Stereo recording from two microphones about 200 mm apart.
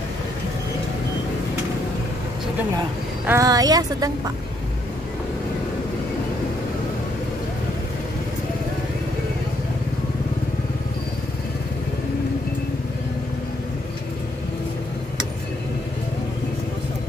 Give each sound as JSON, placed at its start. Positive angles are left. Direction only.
{"t": 3.3, "sound": "speech", "side_deg": -15}